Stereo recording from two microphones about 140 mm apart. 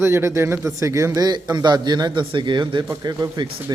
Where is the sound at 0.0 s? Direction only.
20° right (ahead or behind).